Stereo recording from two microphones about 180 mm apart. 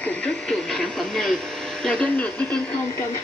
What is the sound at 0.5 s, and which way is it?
Television, 5° left (ahead or behind).